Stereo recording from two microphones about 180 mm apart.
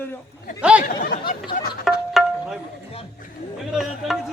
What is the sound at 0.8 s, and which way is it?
Speech, 50° left (ahead or behind).